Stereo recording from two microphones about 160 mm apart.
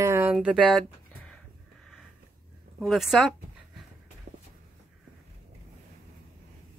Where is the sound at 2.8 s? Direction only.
Centre (ahead or behind).